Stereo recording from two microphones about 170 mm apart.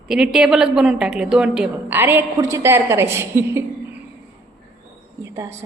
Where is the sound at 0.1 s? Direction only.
5° right (ahead or behind).